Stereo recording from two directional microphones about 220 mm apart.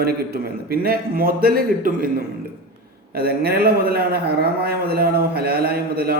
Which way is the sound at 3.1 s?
45° right (ahead or behind).